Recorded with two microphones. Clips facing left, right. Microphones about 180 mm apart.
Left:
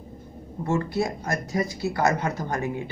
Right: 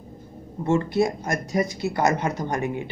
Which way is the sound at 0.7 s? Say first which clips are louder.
Right 4 dB; 20° right (ahead or behind).